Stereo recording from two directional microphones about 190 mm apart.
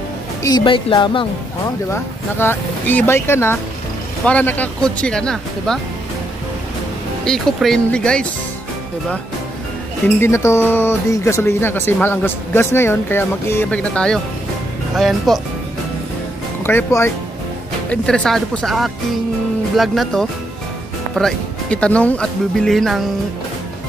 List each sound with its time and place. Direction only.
0.4 s speech: 20° left (ahead or behind)
1.9 s speech: 10° left (ahead or behind)
7.2 s speech: 5° left (ahead or behind)
10.2 s speech: 15° left (ahead or behind)
16.6 s speech: 10° left (ahead or behind)